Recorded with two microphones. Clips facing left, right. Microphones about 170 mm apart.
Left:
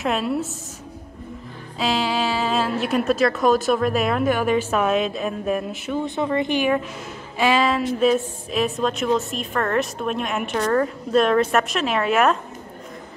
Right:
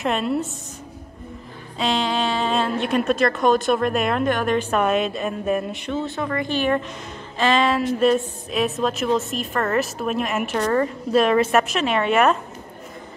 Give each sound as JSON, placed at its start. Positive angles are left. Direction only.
{"t": 0.0, "sound": "a woman's voice", "side_deg": 0}
{"t": 1.8, "sound": "a woman's voice", "side_deg": 5}
{"t": 5.9, "sound": "a woman's voice", "side_deg": 20}